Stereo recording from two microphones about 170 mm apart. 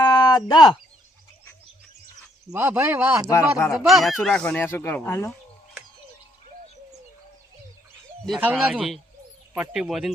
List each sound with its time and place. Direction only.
0.0 s a sound: 25° left (ahead or behind)
2.5 s speech: 15° right (ahead or behind)
3.2 s speech: 15° left (ahead or behind)
3.7 s speech: centre (ahead or behind)
8.4 s speech: 10° right (ahead or behind)